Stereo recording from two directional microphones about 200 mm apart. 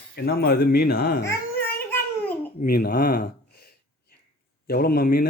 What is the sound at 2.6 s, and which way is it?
Speech, 45° left (ahead or behind).